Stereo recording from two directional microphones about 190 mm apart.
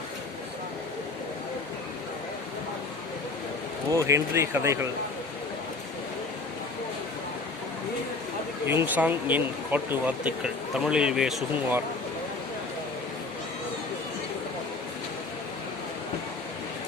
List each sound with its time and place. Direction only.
3.9 s speech: 15° right (ahead or behind)
8.6 s speech: 10° right (ahead or behind)